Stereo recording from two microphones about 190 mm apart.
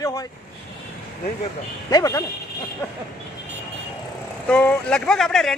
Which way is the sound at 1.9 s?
20° left (ahead or behind).